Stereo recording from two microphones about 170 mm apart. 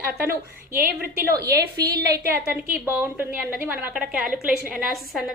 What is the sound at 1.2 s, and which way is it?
A woman's voice, 20° right (ahead or behind).